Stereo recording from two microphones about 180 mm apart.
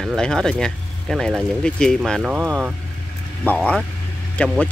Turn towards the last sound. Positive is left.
turn(degrees=5)  # may be behind; listen again after turning